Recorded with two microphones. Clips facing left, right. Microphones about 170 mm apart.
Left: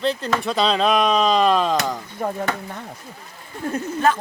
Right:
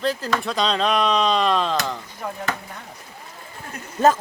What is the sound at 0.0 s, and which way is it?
Speech, centre (ahead or behind).